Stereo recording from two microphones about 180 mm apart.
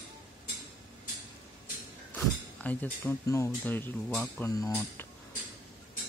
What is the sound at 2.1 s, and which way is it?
Speech, 10° left (ahead or behind).